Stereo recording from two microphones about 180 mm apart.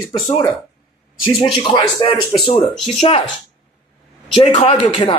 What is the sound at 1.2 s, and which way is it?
Speech, 25° left (ahead or behind).